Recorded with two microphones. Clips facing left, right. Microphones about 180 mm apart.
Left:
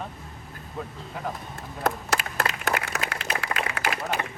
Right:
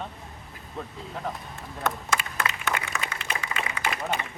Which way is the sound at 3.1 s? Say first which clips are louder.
Left 3 dB; 70° left (ahead or behind).